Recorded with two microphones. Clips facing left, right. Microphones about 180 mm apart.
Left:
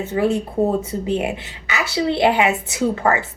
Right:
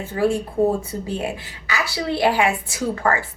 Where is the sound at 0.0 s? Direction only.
20° left (ahead or behind).